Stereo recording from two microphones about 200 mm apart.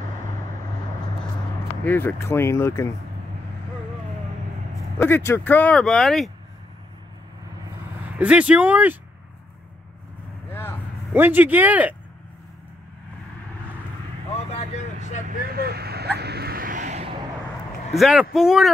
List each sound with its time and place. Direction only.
1.9 s speech: 10° left (ahead or behind)
4.9 s speech: 10° left (ahead or behind)
8.2 s speech: 5° right (ahead or behind)
10.5 s vehicle: 10° left (ahead or behind)
11.1 s speech: 10° right (ahead or behind)
14.3 s vehicle: 30° left (ahead or behind)
15.2 s vehicle: 50° right (ahead or behind)
17.9 s speech: centre (ahead or behind)